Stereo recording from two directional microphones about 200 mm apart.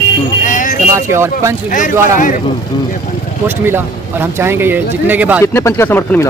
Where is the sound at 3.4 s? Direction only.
10° right (ahead or behind).